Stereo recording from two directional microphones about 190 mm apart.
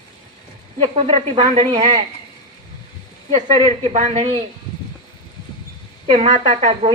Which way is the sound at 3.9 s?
35° right (ahead or behind).